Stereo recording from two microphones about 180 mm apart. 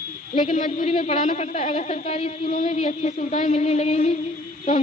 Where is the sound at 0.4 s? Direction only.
35° left (ahead or behind).